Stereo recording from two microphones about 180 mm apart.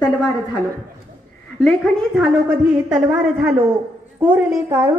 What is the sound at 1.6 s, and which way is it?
A woman's voice, centre (ahead or behind).